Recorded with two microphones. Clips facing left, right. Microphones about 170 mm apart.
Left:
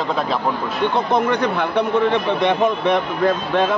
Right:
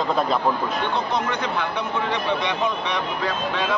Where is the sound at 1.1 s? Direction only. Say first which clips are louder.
Left 7 dB; 55° left (ahead or behind).